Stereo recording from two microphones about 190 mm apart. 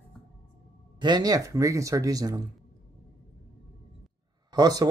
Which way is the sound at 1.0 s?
20° right (ahead or behind).